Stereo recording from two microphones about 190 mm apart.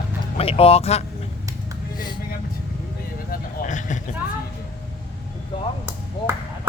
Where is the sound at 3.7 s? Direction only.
40° left (ahead or behind).